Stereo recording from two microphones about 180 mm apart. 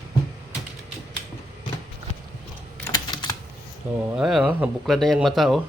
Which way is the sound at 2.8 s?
20° left (ahead or behind).